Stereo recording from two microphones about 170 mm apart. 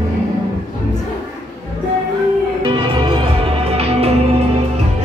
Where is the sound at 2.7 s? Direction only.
30° right (ahead or behind).